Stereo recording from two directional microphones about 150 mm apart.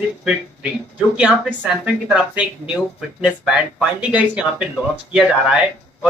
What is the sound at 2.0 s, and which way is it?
Speech, 5° right (ahead or behind).